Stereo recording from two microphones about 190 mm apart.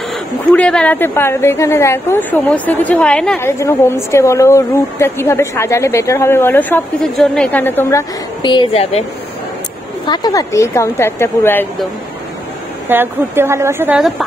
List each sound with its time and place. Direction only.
0.5 s a woman's voice: 5° left (ahead or behind)
8.4 s speech: 25° left (ahead or behind)
10.0 s a woman's voice: 20° left (ahead or behind)
12.8 s a woman's voice: 10° right (ahead or behind)